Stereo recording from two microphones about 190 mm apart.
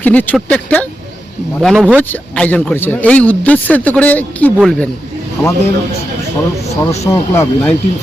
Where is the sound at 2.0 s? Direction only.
10° left (ahead or behind).